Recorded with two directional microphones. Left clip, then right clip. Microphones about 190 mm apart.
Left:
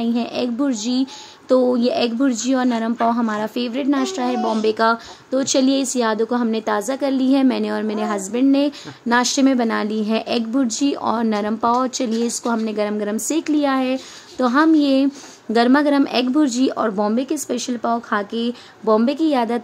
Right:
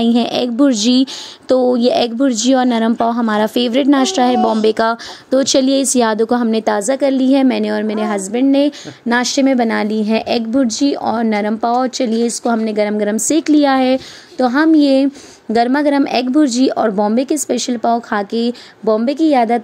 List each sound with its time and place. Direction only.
0.0 s speech: 40° right (ahead or behind)
7.0 s a woman's voice: 20° right (ahead or behind)